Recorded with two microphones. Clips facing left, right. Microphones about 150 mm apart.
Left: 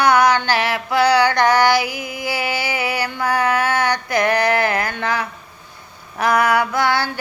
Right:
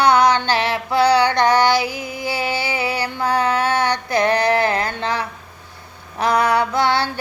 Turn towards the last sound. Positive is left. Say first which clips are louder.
# right 1 dB
turn(degrees=-25)  # may be behind; listen again after turning